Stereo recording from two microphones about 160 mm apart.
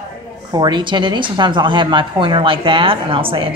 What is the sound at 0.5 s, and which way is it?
Speech, 30° right (ahead or behind).